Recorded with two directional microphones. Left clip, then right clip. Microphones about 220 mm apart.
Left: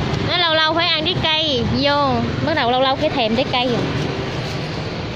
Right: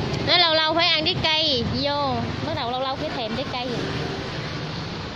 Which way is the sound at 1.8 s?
10° left (ahead or behind).